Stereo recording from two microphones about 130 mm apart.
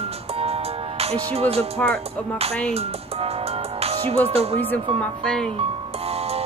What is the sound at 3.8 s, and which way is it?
Music, 50° right (ahead or behind).